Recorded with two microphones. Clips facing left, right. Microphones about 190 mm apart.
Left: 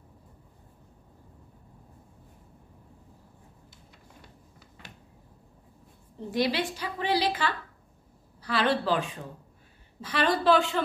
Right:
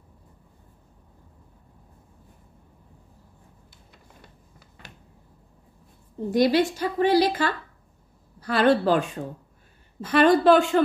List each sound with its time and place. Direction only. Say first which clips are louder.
6.3 s a woman's voice: right 8 dB; 45° right (ahead or behind)